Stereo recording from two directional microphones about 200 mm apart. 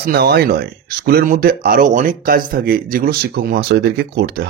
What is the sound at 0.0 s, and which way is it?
Speech, 50° right (ahead or behind).